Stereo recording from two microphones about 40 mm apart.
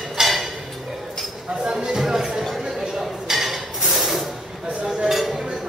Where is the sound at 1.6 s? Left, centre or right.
Centre.